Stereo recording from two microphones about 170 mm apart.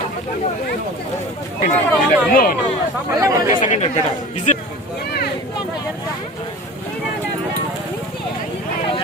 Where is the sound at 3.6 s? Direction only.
45° left (ahead or behind).